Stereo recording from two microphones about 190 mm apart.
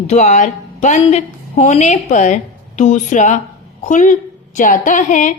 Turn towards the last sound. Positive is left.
turn(degrees=40)  # may be behind; listen again after turning